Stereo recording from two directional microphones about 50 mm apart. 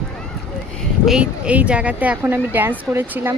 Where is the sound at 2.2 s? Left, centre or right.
Right.